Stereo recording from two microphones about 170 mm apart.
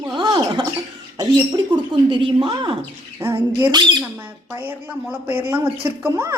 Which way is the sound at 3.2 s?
15° right (ahead or behind).